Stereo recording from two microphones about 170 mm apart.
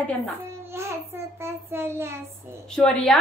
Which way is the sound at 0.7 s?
15° right (ahead or behind).